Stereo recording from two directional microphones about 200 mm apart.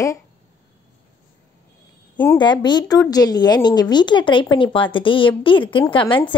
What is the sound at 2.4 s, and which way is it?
A woman's voice, 20° left (ahead or behind).